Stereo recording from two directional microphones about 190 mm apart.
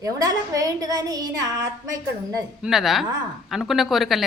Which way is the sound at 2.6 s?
Centre (ahead or behind).